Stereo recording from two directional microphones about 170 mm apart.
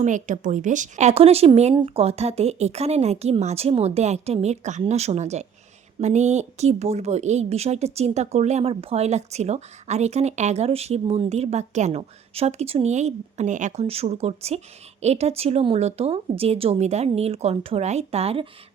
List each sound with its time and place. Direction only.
0.0 s a woman's voice: 45° right (ahead or behind)